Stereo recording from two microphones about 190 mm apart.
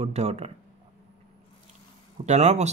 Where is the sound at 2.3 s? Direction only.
35° right (ahead or behind).